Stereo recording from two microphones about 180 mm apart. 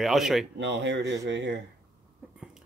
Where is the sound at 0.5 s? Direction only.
75° right (ahead or behind).